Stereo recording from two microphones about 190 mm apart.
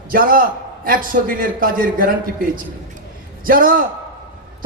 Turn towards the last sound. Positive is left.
turn(degrees=-50)  # may be behind; listen again after turning